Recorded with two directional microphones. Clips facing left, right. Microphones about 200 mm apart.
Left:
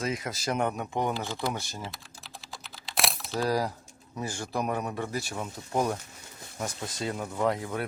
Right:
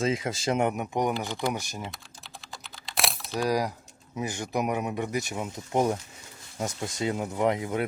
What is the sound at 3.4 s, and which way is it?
Speech, 15° right (ahead or behind).